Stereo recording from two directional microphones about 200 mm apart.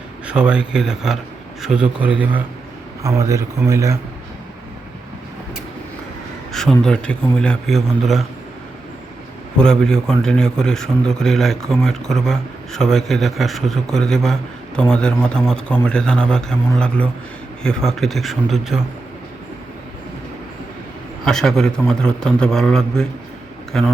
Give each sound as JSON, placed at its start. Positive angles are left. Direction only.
{"t": 0.3, "sound": "a man's voice", "side_deg": -5}
{"t": 6.5, "sound": "a man's voice", "side_deg": 0}
{"t": 9.6, "sound": "a man's voice", "side_deg": 5}
{"t": 21.2, "sound": "a man's voice", "side_deg": 5}